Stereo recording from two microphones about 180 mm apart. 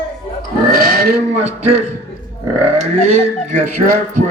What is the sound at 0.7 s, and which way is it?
Pig, 55° right (ahead or behind).